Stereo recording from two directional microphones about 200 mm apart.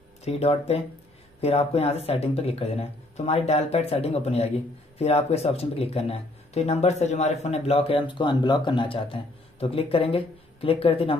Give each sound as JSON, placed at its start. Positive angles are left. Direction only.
{"t": 0.2, "sound": "speech", "side_deg": 30}